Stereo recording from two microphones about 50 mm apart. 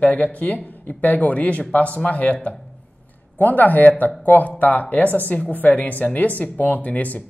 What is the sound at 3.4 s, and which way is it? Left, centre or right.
Speech, left.